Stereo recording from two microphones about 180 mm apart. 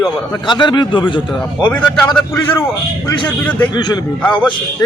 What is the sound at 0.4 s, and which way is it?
Speech, 25° left (ahead or behind).